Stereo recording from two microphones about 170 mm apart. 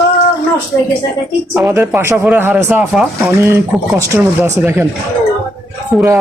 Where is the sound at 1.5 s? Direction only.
10° right (ahead or behind).